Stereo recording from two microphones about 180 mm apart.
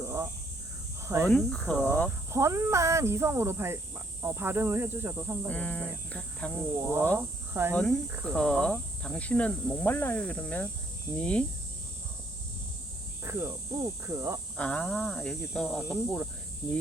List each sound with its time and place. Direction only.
0.0 s snake: 15° right (ahead or behind)
1.2 s speech: 5° left (ahead or behind)
2.0 s speech: 15° right (ahead or behind)
5.5 s speech: 10° left (ahead or behind)
6.7 s speech: 15° right (ahead or behind)
8.2 s speech: 5° left (ahead or behind)
13.2 s speech: 15° right (ahead or behind)
14.5 s speech: 5° left (ahead or behind)